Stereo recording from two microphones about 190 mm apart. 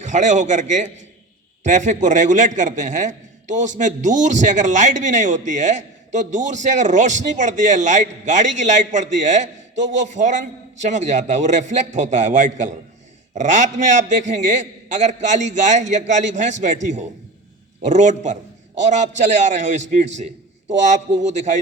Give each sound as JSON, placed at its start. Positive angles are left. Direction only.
{"t": 0.0, "sound": "a man's voice", "side_deg": -40}